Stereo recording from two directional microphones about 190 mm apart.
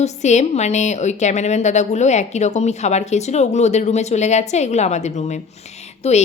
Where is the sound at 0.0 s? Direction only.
35° left (ahead or behind).